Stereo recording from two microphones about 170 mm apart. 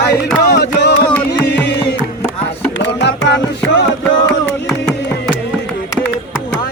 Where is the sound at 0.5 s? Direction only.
80° left.